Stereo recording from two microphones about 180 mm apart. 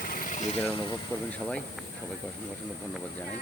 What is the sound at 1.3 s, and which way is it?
Speech, 5° left (ahead or behind).